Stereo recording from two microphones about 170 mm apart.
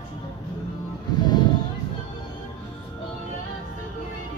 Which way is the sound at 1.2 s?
25° left (ahead or behind).